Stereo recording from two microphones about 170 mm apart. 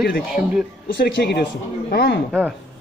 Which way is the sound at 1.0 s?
70° left (ahead or behind).